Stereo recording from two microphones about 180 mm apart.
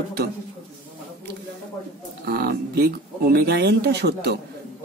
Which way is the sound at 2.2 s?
60° right (ahead or behind).